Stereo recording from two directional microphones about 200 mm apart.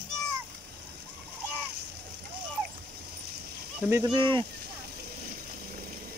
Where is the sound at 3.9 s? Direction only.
20° right (ahead or behind).